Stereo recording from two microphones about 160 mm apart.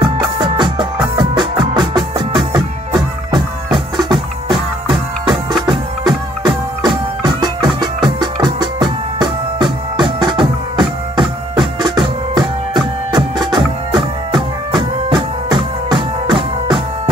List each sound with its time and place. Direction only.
0.0 s music: 30° right (ahead or behind)
5.7 s music: 25° right (ahead or behind)